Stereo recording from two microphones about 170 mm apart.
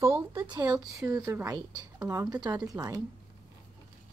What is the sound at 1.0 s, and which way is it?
A woman's voice, 20° right (ahead or behind).